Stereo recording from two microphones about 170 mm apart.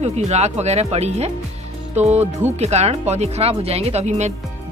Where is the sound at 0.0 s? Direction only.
40° right (ahead or behind).